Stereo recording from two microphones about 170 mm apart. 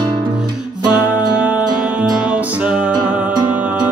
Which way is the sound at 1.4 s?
10° right (ahead or behind).